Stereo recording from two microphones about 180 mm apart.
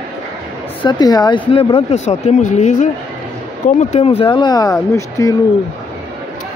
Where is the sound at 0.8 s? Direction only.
25° left (ahead or behind); by 4.1 s 40° left (ahead or behind).